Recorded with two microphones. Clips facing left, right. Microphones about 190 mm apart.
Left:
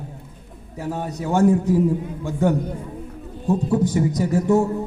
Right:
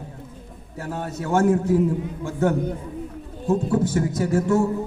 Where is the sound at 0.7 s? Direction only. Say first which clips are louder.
Left 2 dB; 15° left (ahead or behind).